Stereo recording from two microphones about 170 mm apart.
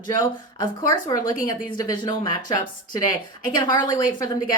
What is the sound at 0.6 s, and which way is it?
A woman's voice, 25° left (ahead or behind).